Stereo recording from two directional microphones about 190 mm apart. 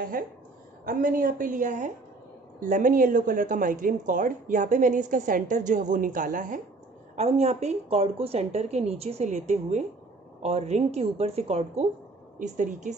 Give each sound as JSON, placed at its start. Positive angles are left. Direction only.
{"t": 0.2, "sound": "a woman's voice", "side_deg": -50}